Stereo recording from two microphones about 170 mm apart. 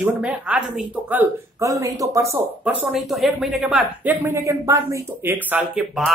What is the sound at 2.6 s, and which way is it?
Speech, 5° right (ahead or behind).